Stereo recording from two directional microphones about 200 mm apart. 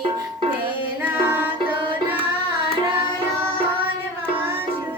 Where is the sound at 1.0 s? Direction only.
10° right (ahead or behind).